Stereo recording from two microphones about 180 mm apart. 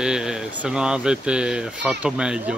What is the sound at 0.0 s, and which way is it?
Speech, 5° right (ahead or behind).